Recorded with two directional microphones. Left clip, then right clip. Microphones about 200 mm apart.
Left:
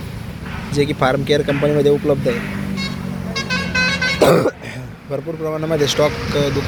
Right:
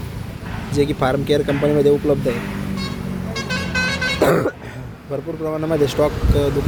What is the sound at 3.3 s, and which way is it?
Vehicle, 60° right (ahead or behind).